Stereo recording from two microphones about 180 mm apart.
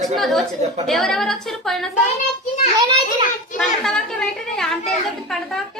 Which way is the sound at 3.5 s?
5° left (ahead or behind).